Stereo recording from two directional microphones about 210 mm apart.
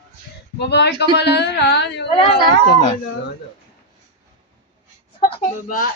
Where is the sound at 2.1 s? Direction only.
20° left (ahead or behind).